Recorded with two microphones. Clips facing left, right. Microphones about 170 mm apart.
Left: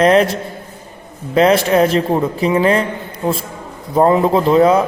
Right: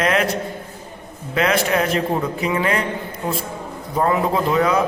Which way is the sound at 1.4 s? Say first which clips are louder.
Left 7 dB; 30° left (ahead or behind).